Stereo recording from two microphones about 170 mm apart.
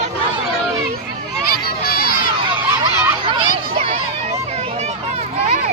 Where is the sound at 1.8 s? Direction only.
65° left (ahead or behind).